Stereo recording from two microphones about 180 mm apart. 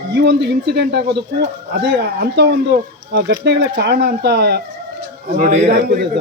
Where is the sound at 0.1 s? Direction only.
70° right (ahead or behind).